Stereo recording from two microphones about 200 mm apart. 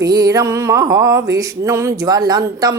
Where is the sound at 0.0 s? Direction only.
20° right (ahead or behind).